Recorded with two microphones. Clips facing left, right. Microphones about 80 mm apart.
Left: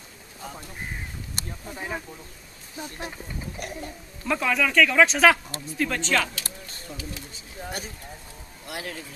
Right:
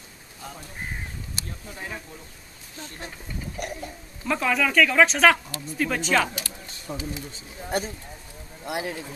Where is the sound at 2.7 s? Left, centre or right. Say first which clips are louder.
Left 4 dB; centre.